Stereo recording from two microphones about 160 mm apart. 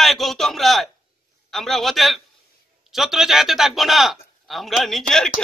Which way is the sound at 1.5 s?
Centre (ahead or behind).